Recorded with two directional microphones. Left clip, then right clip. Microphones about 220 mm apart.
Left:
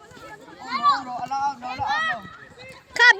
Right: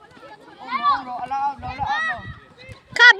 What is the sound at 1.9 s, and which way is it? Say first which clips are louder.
Run: right 1 dB; 40° left (ahead or behind).